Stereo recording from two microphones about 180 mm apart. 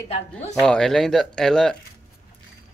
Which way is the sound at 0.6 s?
5° left (ahead or behind).